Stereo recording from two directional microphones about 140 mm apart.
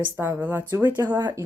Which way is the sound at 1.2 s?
30° right (ahead or behind).